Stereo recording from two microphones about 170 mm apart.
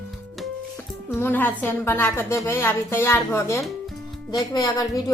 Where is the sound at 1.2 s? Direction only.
10° left (ahead or behind).